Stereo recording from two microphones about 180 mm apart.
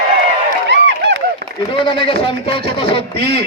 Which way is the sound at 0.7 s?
75° right (ahead or behind).